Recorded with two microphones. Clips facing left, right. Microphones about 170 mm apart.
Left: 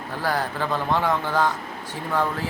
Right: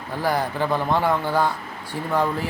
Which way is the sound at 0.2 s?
15° right (ahead or behind).